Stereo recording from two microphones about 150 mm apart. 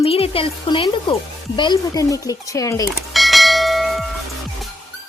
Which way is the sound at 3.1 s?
Centre (ahead or behind).